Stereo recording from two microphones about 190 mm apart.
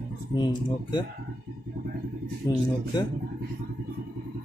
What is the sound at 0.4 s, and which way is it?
Speech, 20° left (ahead or behind).